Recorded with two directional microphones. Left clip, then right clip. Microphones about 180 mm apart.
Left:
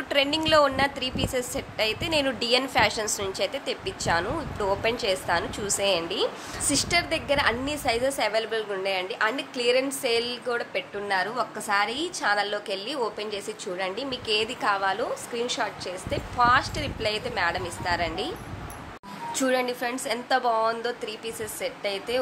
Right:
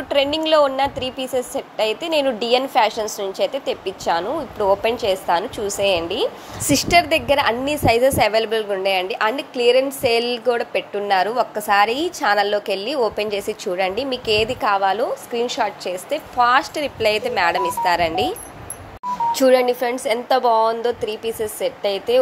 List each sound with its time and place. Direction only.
0.1 s a woman's voice: 15° right (ahead or behind)
6.7 s a woman's voice: 35° right (ahead or behind)
19.3 s a woman's voice: 25° right (ahead or behind)